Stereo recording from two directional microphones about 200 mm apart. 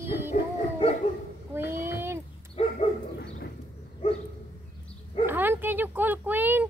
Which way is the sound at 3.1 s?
55° left (ahead or behind).